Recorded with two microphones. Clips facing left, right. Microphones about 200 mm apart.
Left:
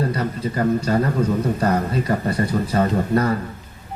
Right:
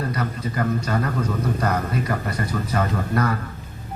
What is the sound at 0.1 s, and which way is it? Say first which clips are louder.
Speech: left 3 dB; 30° left (ahead or behind).